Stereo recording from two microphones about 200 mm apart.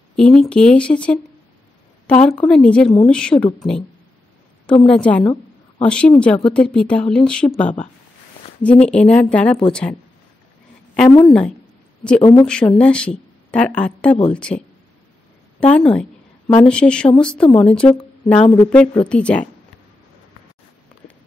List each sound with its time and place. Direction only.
0.1 s a woman's voice: 5° left (ahead or behind)
4.8 s speech: 5° left (ahead or behind)
11.2 s speech: 5° left (ahead or behind)
12.2 s speech: 20° left (ahead or behind)
12.4 s speech: 5° left (ahead or behind)
15.6 s speech: 5° left (ahead or behind)